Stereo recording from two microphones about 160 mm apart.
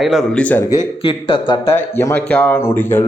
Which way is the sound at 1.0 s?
35° left (ahead or behind).